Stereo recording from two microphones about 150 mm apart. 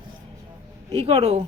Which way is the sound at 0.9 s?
45° right (ahead or behind).